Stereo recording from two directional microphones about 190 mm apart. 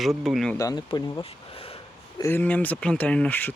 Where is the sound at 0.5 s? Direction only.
20° left (ahead or behind).